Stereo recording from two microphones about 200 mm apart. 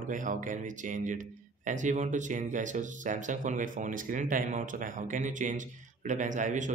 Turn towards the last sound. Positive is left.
turn(degrees=-40)  # may be behind; listen again after turning